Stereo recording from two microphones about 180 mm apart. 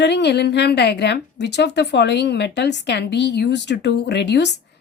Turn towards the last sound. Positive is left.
turn(degrees=70)  # may be behind; listen again after turning